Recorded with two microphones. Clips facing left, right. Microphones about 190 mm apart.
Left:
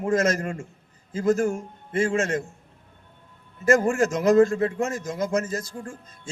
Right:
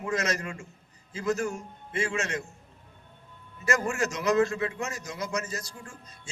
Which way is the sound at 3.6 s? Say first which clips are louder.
Left 8 dB; 50° left (ahead or behind).